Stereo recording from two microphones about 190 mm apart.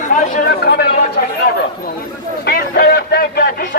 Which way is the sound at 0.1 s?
55° left (ahead or behind).